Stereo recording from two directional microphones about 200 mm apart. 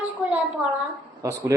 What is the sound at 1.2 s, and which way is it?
Speech, 15° right (ahead or behind).